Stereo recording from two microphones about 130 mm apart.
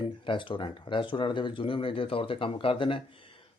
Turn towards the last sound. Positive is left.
turn(degrees=40)  # may be behind; listen again after turning